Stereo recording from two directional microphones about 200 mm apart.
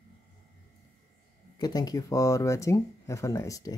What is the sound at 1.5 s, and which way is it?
Speech, 20° left (ahead or behind).